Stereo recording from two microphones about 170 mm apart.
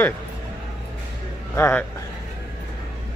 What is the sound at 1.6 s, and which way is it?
Speech, 10° left (ahead or behind).